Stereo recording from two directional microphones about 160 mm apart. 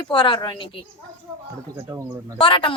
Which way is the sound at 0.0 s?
30° left (ahead or behind).